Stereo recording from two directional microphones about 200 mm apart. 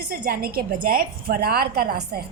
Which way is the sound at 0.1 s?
50° right (ahead or behind).